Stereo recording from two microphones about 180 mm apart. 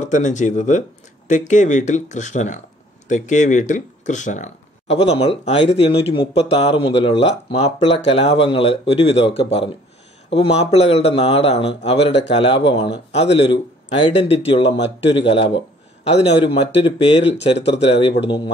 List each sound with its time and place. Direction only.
0.0 s speech: 40° left (ahead or behind)
16.4 s speech: 30° left (ahead or behind)